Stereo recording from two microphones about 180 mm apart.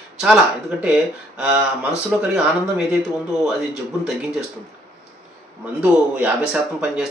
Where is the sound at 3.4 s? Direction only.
5° right (ahead or behind).